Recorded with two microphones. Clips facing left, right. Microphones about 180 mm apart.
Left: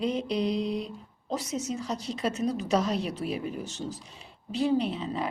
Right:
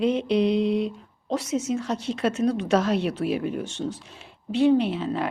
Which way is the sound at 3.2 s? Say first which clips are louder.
Right 6 dB; 70° right (ahead or behind).